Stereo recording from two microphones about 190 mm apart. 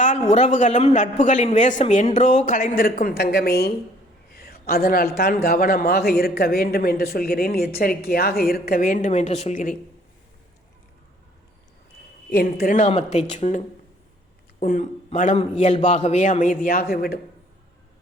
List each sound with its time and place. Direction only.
0.0 s a man's voice: 40° left (ahead or behind)
12.3 s a man's voice: 50° left (ahead or behind)
14.6 s a man's voice: 45° left (ahead or behind)